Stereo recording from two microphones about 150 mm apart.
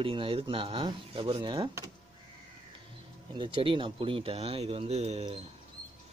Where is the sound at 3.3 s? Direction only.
35° right (ahead or behind).